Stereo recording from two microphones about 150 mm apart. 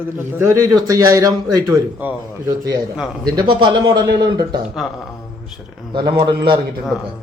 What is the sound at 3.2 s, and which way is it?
A man's voice, 30° right (ahead or behind).